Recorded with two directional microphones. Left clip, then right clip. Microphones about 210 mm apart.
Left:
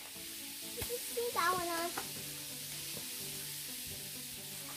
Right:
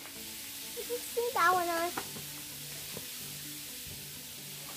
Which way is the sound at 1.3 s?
40° right (ahead or behind).